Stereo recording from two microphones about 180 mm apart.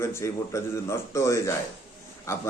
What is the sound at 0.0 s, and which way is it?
A man's voice, 15° left (ahead or behind).